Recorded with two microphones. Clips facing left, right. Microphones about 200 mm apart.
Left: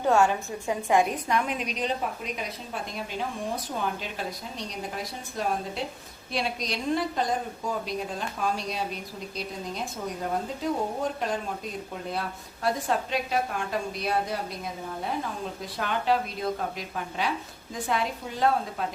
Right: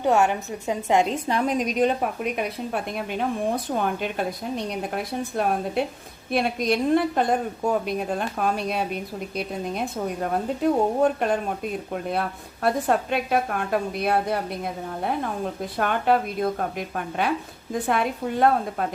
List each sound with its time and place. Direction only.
0.0 s a woman's voice: 20° right (ahead or behind); by 18.9 s 55° right (ahead or behind)